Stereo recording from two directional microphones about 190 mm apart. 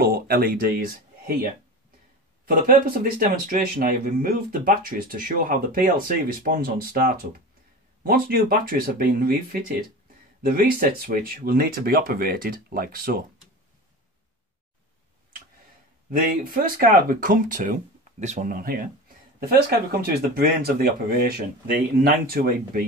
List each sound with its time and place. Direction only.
0.0 s speech: 50° right (ahead or behind)
16.1 s speech: 50° right (ahead or behind)